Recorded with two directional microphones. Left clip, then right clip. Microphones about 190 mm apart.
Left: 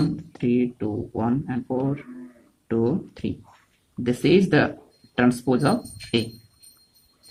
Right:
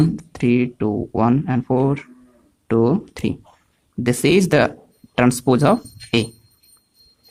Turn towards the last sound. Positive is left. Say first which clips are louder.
# right 6 dB
turn(degrees=-50)  # may be behind; listen again after turning